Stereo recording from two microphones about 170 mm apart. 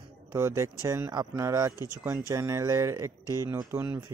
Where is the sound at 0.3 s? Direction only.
15° right (ahead or behind).